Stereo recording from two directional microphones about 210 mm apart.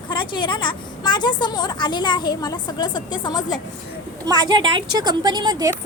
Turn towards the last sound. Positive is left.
turn(degrees=-20)  # may be behind; listen again after turning